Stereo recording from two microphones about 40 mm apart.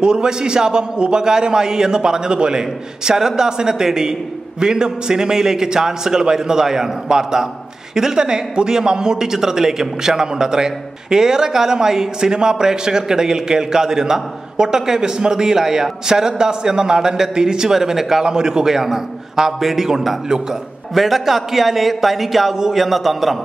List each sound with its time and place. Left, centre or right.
0.0 s a man's voice: centre